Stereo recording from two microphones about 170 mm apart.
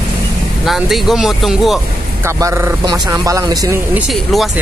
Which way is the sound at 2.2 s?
15° right (ahead or behind).